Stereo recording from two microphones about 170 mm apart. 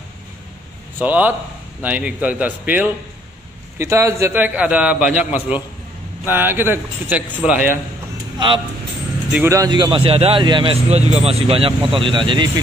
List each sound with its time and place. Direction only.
0.9 s a man's voice: 10° right (ahead or behind)
9.3 s speech: 15° right (ahead or behind)